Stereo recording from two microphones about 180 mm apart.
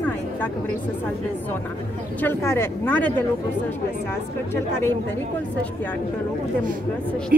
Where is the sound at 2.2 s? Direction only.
15° left (ahead or behind).